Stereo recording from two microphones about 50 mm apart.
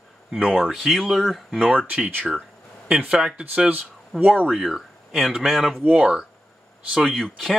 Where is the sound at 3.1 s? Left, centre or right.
Centre.